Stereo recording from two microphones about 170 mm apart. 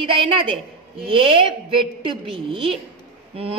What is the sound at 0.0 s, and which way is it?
A woman's voice, 30° right (ahead or behind).